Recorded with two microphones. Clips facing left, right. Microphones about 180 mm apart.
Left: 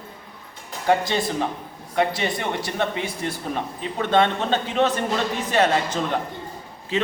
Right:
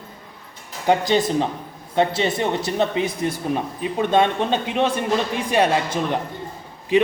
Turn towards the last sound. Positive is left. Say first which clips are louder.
# right 7 dB
turn(degrees=-15)  # may be behind; listen again after turning